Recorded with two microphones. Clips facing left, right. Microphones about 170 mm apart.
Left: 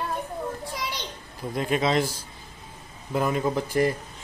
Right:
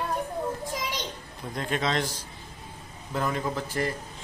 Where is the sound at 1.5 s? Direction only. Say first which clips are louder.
Left 4 dB; 10° left (ahead or behind).